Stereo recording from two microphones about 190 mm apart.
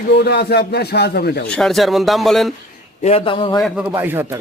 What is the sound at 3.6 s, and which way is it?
Speech, 5° right (ahead or behind).